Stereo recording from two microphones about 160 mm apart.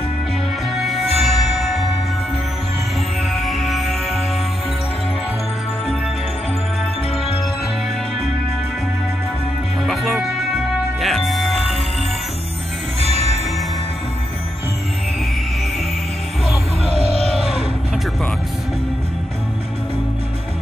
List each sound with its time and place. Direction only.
0.7 s music: centre (ahead or behind)
3.3 s music: centre (ahead or behind)
9.8 s music: centre (ahead or behind)
16.9 s music: 35° left (ahead or behind)